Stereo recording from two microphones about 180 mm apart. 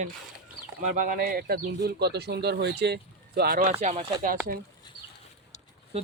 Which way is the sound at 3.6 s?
40° right (ahead or behind).